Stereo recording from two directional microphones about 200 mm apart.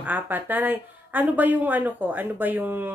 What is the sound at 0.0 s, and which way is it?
Speech, 10° right (ahead or behind).